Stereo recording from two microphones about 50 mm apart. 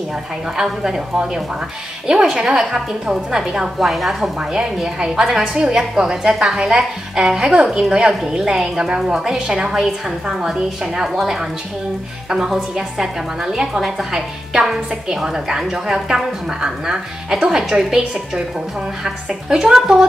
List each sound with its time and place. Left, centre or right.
0.6 s a woman's voice: centre
4.4 s a woman's voice: centre
19.5 s a woman's voice: centre